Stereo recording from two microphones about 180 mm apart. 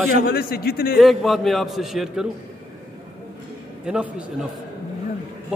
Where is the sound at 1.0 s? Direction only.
Centre (ahead or behind).